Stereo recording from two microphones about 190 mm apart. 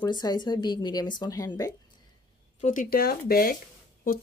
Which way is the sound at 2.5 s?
45° left (ahead or behind).